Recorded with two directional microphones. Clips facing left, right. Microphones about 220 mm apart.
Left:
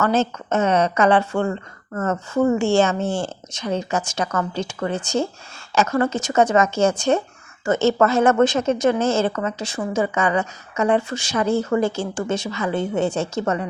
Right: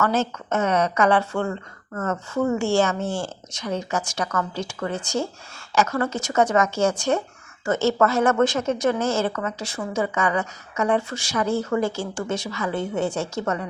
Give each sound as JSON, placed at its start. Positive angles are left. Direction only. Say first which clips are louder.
{"t": 0.0, "sound": "speech", "louder": "left 3 dB", "side_deg": 20}